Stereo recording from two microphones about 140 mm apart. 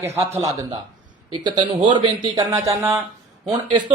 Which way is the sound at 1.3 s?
35° right (ahead or behind).